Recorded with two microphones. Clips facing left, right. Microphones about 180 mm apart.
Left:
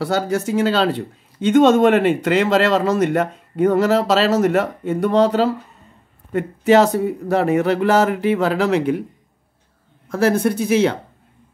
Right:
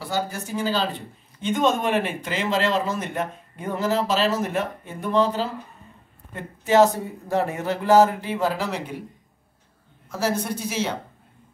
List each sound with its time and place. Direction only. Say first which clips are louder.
0.0 s speech: left 8 dB; 75° left (ahead or behind)
10.1 s speech: left 8 dB; 55° left (ahead or behind)